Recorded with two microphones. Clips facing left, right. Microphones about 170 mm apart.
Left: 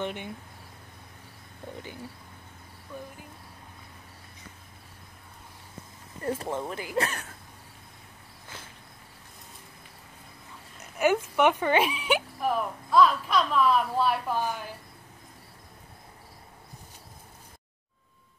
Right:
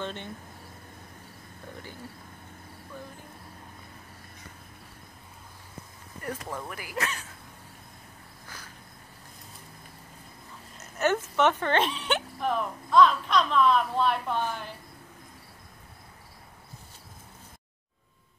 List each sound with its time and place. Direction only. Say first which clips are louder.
0.0 s cricket: left 2 dB; 15° left (ahead or behind)
6.2 s speech: left 5 dB; 25° left (ahead or behind)
10.8 s speech: left 2 dB; 10° left (ahead or behind)